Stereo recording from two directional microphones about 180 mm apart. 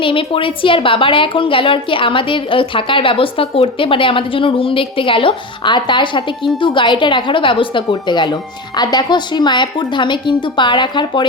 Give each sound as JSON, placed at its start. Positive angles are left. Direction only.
{"t": 0.0, "sound": "a woman's voice", "side_deg": 30}